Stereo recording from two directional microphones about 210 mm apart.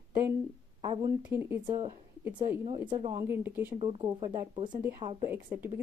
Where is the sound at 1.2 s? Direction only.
10° right (ahead or behind).